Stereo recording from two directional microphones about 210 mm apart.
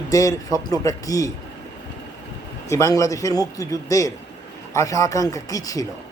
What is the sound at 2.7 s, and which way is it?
Speech, 15° left (ahead or behind).